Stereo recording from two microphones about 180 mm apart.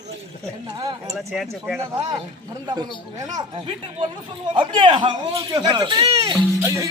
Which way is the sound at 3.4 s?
25° right (ahead or behind).